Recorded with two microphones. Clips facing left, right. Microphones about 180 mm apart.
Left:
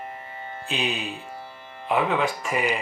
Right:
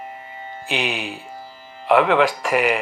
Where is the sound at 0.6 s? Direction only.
75° right (ahead or behind).